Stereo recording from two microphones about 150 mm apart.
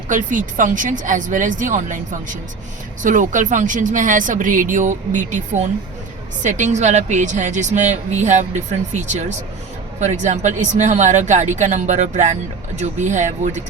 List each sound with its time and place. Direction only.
0.1 s speech: 60° right (ahead or behind)